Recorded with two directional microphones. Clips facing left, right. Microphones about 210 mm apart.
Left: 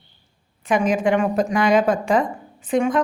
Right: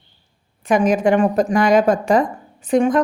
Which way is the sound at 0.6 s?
40° right (ahead or behind).